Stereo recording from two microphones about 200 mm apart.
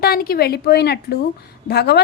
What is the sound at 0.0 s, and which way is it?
A woman's voice, 50° left (ahead or behind).